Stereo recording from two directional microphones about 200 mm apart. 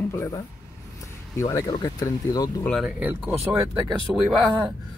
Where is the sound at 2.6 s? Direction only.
Centre (ahead or behind).